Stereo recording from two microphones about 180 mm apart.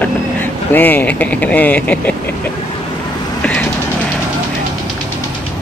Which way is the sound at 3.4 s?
5° left (ahead or behind).